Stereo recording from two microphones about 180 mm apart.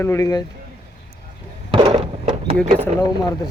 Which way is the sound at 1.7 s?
30° right (ahead or behind).